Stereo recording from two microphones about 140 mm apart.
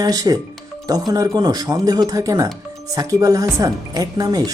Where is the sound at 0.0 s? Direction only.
25° right (ahead or behind).